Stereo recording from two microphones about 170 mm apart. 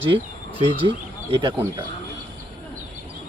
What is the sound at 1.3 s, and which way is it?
Speech, 30° right (ahead or behind).